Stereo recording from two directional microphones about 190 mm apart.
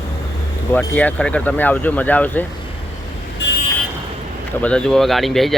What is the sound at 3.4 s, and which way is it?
Vehicle, 70° left (ahead or behind).